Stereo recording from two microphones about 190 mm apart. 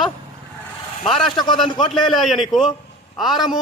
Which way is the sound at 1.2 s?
25° left (ahead or behind).